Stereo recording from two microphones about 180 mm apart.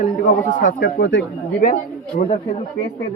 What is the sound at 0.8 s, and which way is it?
Speech, 75° left (ahead or behind).